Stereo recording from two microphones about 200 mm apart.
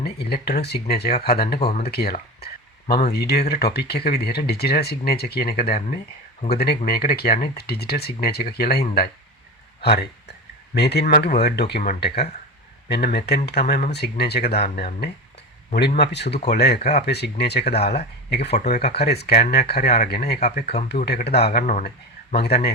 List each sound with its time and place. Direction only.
0.0 s speech: 50° left (ahead or behind)
2.4 s a sound: 50° left (ahead or behind)
3.1 s speech: 55° left (ahead or behind)
9.8 s a man's voice: 55° left (ahead or behind)
18.9 s speech: 55° left (ahead or behind)